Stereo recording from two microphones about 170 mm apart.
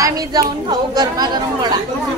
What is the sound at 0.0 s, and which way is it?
Speech, 20° right (ahead or behind).